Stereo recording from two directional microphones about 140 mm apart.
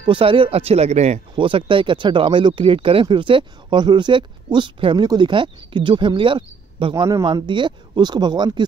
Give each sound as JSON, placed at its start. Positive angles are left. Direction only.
{"t": 0.0, "sound": "speech", "side_deg": -40}
{"t": 1.3, "sound": "speech", "side_deg": -35}